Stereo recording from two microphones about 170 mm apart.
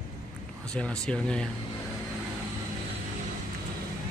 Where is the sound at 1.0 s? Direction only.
5° left (ahead or behind).